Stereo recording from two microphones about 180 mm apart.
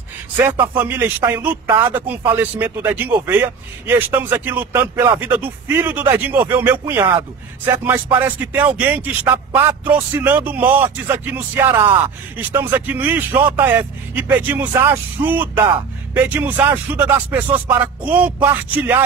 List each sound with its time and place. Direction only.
0.4 s speech: 10° right (ahead or behind)